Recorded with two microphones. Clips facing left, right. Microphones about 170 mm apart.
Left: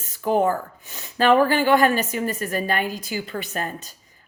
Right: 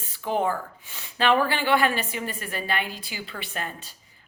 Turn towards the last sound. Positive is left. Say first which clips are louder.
# left 5 dB
turn(degrees=40)  # may be behind; listen again after turning